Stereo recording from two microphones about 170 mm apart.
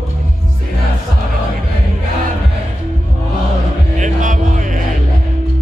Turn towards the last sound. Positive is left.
turn(degrees=-50)  # may be behind; listen again after turning